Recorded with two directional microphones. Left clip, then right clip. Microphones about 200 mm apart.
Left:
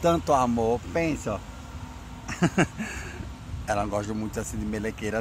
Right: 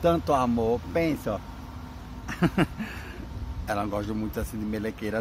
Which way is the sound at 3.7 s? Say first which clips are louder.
Left 2 dB; 15° left (ahead or behind).